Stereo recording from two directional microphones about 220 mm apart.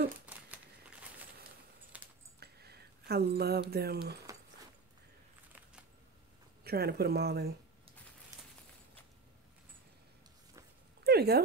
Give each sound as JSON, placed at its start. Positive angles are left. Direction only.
{"t": 0.3, "sound": "crumpling", "side_deg": -5}
{"t": 1.9, "sound": "typing", "side_deg": -5}
{"t": 2.4, "sound": "a sound", "side_deg": -45}
{"t": 3.7, "sound": "speech", "side_deg": -45}
{"t": 4.3, "sound": "a sound", "side_deg": -15}
{"t": 6.6, "sound": "speech", "side_deg": -45}
{"t": 11.1, "sound": "speech", "side_deg": -45}